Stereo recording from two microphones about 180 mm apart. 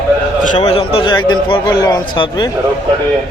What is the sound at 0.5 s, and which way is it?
A man's voice, 30° left (ahead or behind).